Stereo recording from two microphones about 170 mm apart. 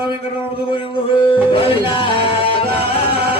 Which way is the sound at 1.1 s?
30° left (ahead or behind).